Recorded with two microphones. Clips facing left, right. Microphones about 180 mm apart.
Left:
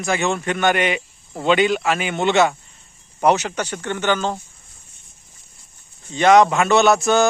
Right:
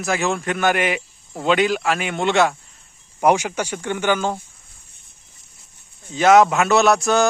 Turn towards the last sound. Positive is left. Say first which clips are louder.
# left 1 dB
turn(degrees=0)  # may be behind; listen again after turning